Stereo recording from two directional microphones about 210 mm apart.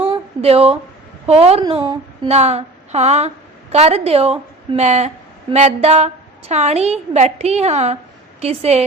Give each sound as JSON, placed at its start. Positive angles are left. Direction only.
{"t": 0.1, "sound": "a sound", "side_deg": -30}
{"t": 1.3, "sound": "a woman's voice", "side_deg": -30}
{"t": 2.2, "sound": "a woman's voice", "side_deg": -30}